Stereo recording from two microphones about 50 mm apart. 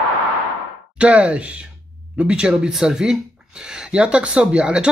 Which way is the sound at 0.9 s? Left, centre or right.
Right.